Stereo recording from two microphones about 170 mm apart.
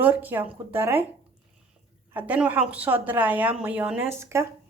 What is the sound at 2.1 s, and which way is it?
Speech, 10° right (ahead or behind).